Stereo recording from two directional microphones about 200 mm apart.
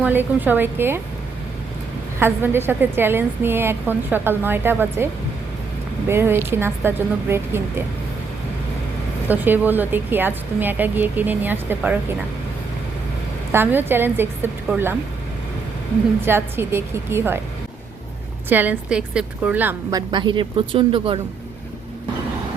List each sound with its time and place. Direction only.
0.0 s a woman's voice: 10° right (ahead or behind)
2.1 s a woman's voice: 10° right (ahead or behind)
6.1 s a woman's voice: 10° right (ahead or behind)
9.3 s a woman's voice: 10° right (ahead or behind)
13.5 s a woman's voice: 10° right (ahead or behind)
16.2 s a woman's voice: 10° right (ahead or behind)
18.4 s a woman's voice: 10° right (ahead or behind); by 21.2 s 25° right (ahead or behind)